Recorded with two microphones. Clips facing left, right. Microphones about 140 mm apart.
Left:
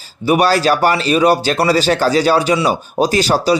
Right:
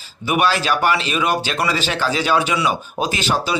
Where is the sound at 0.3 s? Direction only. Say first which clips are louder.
Left 6 dB; 40° left (ahead or behind).